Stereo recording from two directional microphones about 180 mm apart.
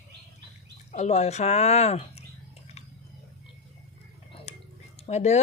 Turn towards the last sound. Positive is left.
turn(degrees=40)  # may be behind; listen again after turning